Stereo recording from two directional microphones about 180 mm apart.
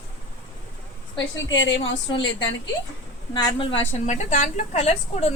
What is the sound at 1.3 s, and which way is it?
Speech, 90° left.